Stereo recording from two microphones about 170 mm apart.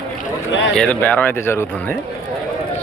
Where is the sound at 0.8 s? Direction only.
10° left (ahead or behind).